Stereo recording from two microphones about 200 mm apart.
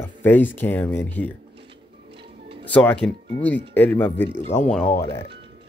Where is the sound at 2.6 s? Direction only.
10° left (ahead or behind).